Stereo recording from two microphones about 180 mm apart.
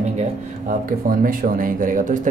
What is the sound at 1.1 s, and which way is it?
Speech, 50° right (ahead or behind).